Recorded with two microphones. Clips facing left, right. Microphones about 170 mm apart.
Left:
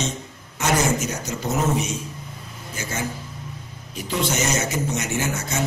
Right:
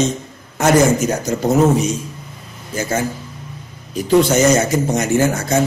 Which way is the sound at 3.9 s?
40° right (ahead or behind).